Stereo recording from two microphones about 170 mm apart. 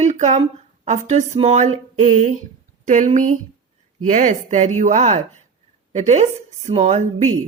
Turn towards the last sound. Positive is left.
turn(degrees=-45)  # may be behind; listen again after turning